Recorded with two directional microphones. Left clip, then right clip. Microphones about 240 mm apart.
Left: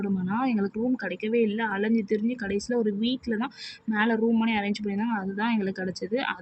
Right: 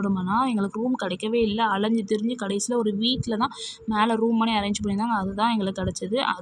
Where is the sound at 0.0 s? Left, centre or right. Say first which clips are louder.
Right 5 dB; centre.